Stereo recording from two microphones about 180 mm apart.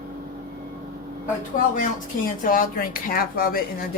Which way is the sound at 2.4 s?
50° left (ahead or behind).